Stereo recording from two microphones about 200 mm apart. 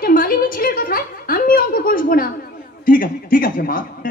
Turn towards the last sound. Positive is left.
turn(degrees=45)  # may be behind; listen again after turning